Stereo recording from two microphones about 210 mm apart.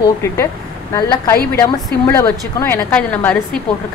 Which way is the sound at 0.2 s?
15° left (ahead or behind).